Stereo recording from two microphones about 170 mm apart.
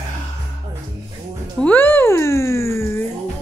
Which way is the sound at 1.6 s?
10° left (ahead or behind).